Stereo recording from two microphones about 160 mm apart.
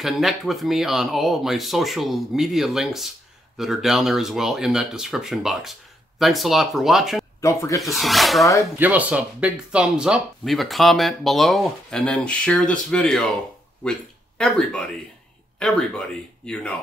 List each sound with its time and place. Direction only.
0.0 s speech: centre (ahead or behind)
7.4 s speech: 20° left (ahead or behind)
7.8 s speech: centre (ahead or behind)
8.7 s speech: 10° right (ahead or behind)
14.4 s speech: 5° left (ahead or behind)